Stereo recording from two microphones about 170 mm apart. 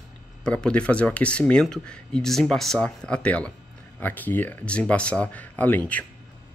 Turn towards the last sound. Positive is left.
turn(degrees=10)  # may be behind; listen again after turning